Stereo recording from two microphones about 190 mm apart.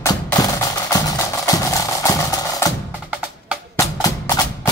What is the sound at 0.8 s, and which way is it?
Music, 20° left (ahead or behind).